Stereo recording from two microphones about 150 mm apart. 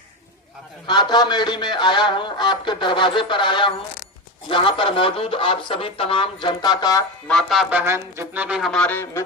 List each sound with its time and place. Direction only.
0.9 s speech: 30° left (ahead or behind)
7.3 s speech: 5° left (ahead or behind)
8.7 s speech: 10° left (ahead or behind)